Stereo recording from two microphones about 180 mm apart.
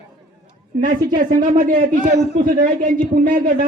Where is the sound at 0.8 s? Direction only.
50° right (ahead or behind).